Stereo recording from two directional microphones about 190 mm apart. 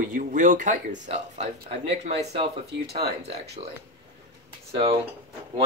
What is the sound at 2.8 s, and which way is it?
Speech, 55° right (ahead or behind).